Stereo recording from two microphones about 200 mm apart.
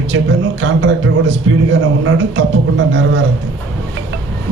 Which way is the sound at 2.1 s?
65° right (ahead or behind).